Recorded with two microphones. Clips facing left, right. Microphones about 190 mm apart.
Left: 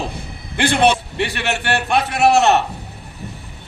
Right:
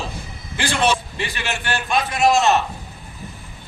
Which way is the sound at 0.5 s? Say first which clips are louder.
Left 5 dB; 60° left (ahead or behind).